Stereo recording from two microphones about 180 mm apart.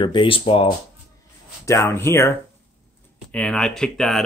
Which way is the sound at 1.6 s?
15° left (ahead or behind).